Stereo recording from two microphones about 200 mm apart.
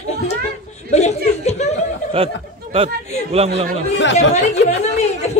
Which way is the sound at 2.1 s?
30° right (ahead or behind).